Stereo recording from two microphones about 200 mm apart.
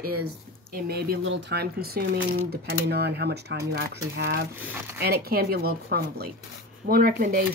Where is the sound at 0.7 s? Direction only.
50° right (ahead or behind).